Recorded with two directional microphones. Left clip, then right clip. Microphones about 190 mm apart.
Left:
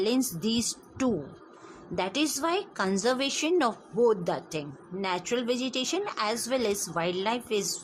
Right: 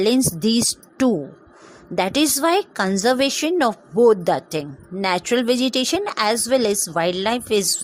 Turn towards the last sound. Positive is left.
turn(degrees=-35)  # may be behind; listen again after turning